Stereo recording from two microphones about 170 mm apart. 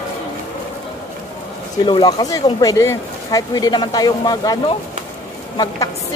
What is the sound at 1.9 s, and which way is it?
Speech, 25° left (ahead or behind).